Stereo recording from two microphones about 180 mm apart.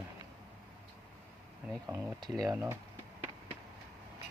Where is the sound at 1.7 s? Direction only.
15° right (ahead or behind).